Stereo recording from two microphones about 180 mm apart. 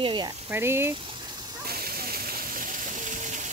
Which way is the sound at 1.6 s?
55° right (ahead or behind).